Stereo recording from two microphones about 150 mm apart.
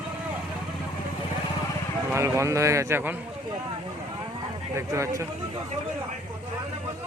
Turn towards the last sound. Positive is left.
turn(degrees=-20)  # may be behind; listen again after turning